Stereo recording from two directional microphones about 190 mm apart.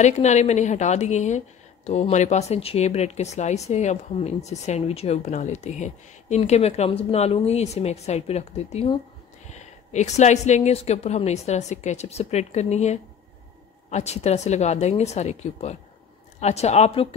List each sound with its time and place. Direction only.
0.0 s speech: 40° left (ahead or behind)